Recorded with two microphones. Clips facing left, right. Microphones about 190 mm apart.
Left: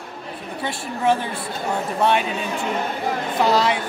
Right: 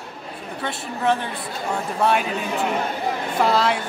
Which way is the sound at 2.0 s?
Centre (ahead or behind).